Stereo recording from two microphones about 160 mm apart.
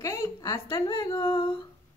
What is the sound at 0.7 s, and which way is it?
Speech, 30° left (ahead or behind).